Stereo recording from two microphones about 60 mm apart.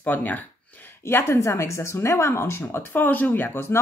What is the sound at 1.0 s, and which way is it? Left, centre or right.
Speech, left.